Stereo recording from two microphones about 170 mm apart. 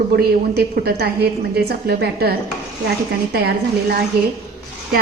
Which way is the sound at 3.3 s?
70° right (ahead or behind).